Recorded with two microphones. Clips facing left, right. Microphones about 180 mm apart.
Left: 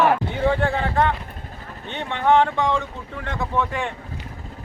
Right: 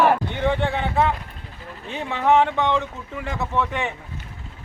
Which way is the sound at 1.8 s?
5° right (ahead or behind).